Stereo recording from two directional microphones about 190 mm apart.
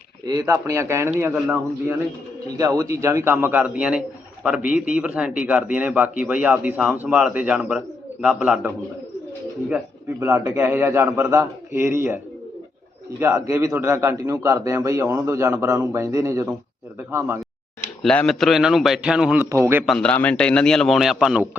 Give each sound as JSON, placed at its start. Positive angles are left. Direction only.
{"t": 0.3, "sound": "a man's voice", "side_deg": -15}
{"t": 2.6, "sound": "a man's voice", "side_deg": -15}
{"t": 10.2, "sound": "a man's voice", "side_deg": -10}
{"t": 18.0, "sound": "a man's voice", "side_deg": 5}
{"t": 19.8, "sound": "a man's voice", "side_deg": 5}